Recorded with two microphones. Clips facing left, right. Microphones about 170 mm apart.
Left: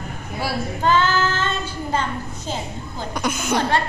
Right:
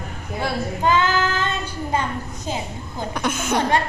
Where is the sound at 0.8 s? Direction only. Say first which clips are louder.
Left 1 dB; 15° right (ahead or behind).